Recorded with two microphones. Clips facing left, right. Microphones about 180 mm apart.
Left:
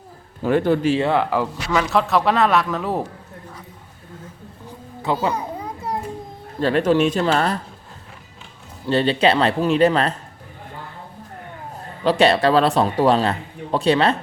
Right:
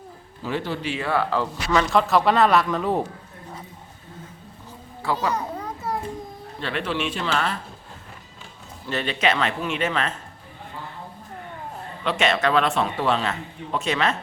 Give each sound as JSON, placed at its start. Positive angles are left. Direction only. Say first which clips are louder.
{"t": 0.4, "sound": "a man's voice", "louder": "left 10 dB", "side_deg": 50}
{"t": 0.9, "sound": "speech", "louder": "left 5 dB", "side_deg": 20}
{"t": 5.0, "sound": "children playing", "louder": "left 3 dB", "side_deg": 15}
{"t": 6.6, "sound": "a man's voice", "louder": "left 10 dB", "side_deg": 40}
{"t": 8.9, "sound": "a man's voice", "louder": "left 7 dB", "side_deg": 30}
{"t": 12.0, "sound": "a man's voice", "louder": "left 6 dB", "side_deg": 35}